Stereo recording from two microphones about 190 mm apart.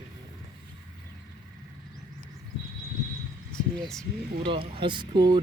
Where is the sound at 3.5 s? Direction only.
5° left (ahead or behind).